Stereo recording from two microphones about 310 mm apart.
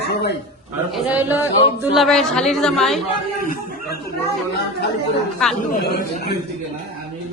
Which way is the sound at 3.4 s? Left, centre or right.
Left.